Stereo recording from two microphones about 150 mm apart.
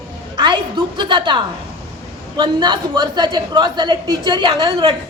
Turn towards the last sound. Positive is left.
turn(degrees=-35)  # may be behind; listen again after turning